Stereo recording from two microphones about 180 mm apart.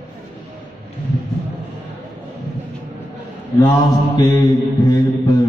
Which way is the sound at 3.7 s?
15° left (ahead or behind).